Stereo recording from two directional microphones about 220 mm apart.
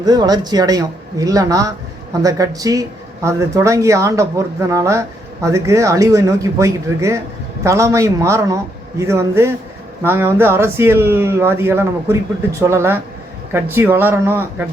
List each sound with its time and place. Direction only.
0.0 s speech: 15° right (ahead or behind)